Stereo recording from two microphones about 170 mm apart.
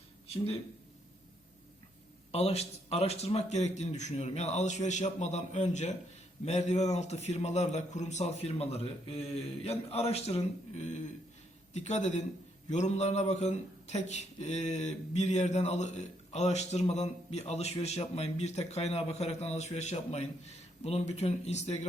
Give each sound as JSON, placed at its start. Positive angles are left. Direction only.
{"t": 2.3, "sound": "speech", "side_deg": 40}